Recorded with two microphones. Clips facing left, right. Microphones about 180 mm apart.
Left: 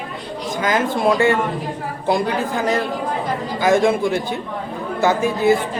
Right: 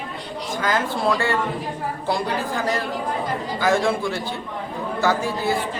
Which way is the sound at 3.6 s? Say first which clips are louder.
Left 5 dB; 20° left (ahead or behind).